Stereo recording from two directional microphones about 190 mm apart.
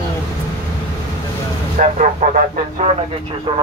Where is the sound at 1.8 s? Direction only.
40° right (ahead or behind).